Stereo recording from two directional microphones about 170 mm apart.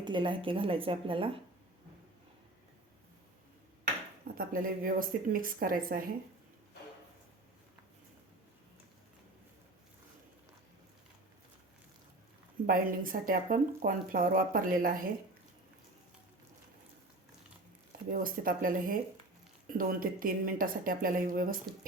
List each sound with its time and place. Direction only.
0.0 s a woman's voice: 30° right (ahead or behind)
4.4 s speech: 55° right (ahead or behind)
12.6 s speech: 55° right (ahead or behind)
18.1 s speech: 55° right (ahead or behind)